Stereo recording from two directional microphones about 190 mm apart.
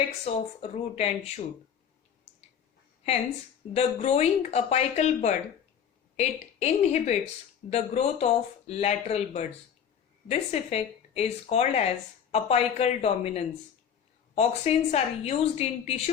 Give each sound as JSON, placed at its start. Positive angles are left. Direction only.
{"t": 0.3, "sound": "speech", "side_deg": 35}
{"t": 3.8, "sound": "speech", "side_deg": 35}